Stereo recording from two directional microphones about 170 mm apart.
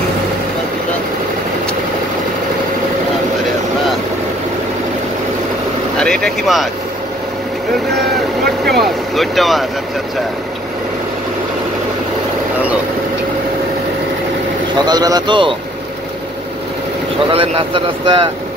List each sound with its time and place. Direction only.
5.9 s speech: 5° left (ahead or behind)
8.6 s speech: centre (ahead or behind)
14.8 s speech: 25° right (ahead or behind)
17.3 s speech: 30° right (ahead or behind)